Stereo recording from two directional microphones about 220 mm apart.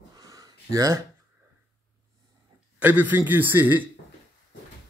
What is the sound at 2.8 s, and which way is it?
A man's voice, 10° right (ahead or behind).